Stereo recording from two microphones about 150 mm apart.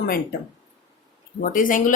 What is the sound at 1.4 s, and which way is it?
Speech, 65° left (ahead or behind).